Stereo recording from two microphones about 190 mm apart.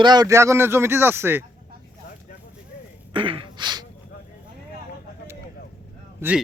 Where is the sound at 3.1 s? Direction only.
25° right (ahead or behind).